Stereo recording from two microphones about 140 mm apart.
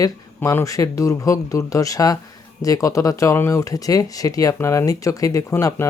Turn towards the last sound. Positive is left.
turn(degrees=20)  # may be behind; listen again after turning